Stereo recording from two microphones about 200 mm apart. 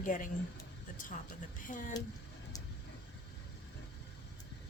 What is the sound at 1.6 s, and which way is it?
Speech, 40° left (ahead or behind).